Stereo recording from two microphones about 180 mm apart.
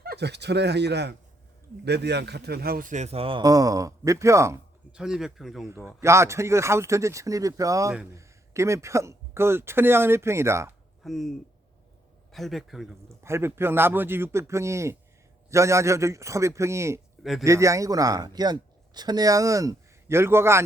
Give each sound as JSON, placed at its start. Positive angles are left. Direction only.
{"t": 0.0, "sound": "a man's voice", "side_deg": -65}
{"t": 4.9, "sound": "speech", "side_deg": -5}
{"t": 5.6, "sound": "a man's voice", "side_deg": -15}
{"t": 11.0, "sound": "speech", "side_deg": 0}
{"t": 13.2, "sound": "a man's voice", "side_deg": -15}